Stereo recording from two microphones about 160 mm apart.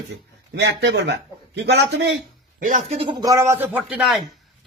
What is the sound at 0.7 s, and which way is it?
Speech, 90° right.